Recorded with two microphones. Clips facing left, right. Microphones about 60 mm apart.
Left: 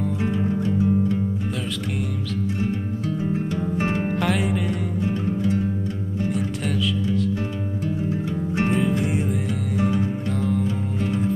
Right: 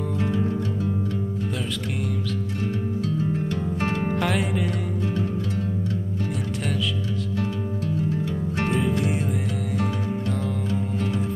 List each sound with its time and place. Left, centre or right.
0.2 s music: centre
3.3 s music: centre
4.1 s music: centre
4.6 s music: centre
6.3 s music: centre
8.3 s music: left
9.0 s music: centre
10.3 s music: centre